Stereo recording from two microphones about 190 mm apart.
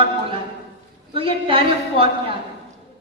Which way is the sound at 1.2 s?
30° right (ahead or behind).